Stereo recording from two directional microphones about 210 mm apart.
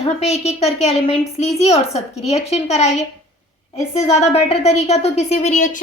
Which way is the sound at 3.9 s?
30° left (ahead or behind).